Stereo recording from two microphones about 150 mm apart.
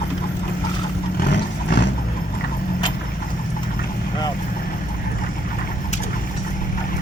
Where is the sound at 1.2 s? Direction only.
65° left (ahead or behind).